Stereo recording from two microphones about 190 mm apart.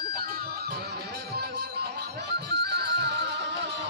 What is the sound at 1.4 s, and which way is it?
Music, 60° right (ahead or behind).